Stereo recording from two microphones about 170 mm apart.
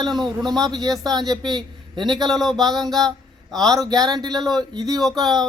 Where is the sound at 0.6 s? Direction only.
25° right (ahead or behind).